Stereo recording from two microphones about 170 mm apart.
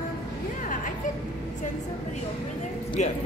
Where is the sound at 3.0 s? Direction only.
45° left (ahead or behind).